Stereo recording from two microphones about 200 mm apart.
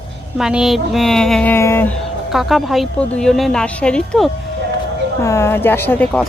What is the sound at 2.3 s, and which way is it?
Speech, centre (ahead or behind).